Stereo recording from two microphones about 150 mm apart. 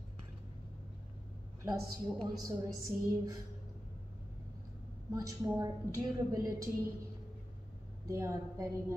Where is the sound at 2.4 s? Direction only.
25° right (ahead or behind).